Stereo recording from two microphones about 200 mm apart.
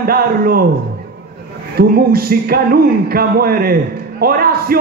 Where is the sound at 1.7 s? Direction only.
50° right (ahead or behind).